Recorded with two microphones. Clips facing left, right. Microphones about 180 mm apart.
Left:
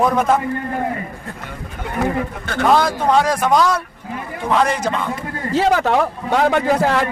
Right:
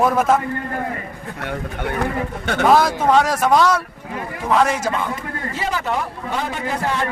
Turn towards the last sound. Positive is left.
turn(degrees=75)  # may be behind; listen again after turning